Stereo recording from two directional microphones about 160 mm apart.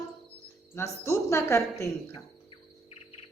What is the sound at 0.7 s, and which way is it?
A woman's voice, 15° left (ahead or behind).